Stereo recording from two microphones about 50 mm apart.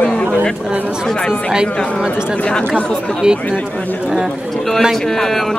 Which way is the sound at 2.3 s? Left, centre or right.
Left.